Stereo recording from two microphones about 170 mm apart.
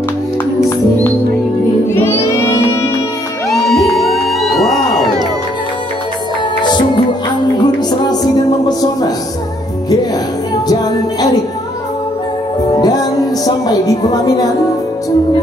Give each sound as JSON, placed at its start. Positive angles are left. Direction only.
{"t": 1.9, "sound": "music", "side_deg": 15}
{"t": 3.4, "sound": "music", "side_deg": 0}
{"t": 6.6, "sound": "music", "side_deg": 25}
{"t": 10.7, "sound": "music", "side_deg": 20}
{"t": 12.7, "sound": "music", "side_deg": 20}
{"t": 13.7, "sound": "a sound", "side_deg": 25}